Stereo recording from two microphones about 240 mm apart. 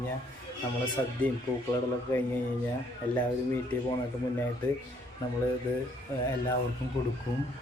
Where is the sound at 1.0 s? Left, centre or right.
Centre.